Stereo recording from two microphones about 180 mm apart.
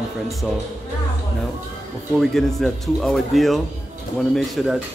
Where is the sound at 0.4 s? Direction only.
Centre (ahead or behind).